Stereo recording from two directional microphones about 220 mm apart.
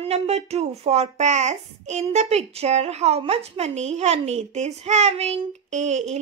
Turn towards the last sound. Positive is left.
turn(degrees=-30)  # may be behind; listen again after turning